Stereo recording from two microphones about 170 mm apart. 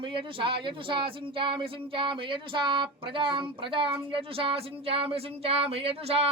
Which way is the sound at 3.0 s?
30° right (ahead or behind).